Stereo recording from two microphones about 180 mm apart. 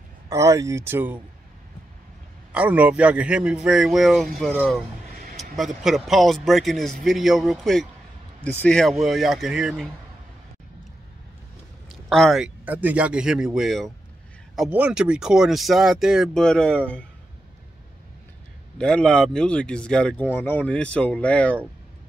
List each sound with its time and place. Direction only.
0.3 s speech: 15° right (ahead or behind)
2.5 s speech: 10° right (ahead or behind)
5.1 s a sound: 50° right (ahead or behind)
5.6 s speech: centre (ahead or behind)
11.9 s speech: centre (ahead or behind)
18.8 s speech: 5° left (ahead or behind)